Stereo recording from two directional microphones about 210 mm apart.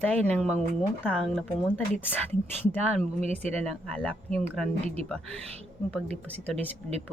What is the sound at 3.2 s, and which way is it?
Speech, 30° right (ahead or behind).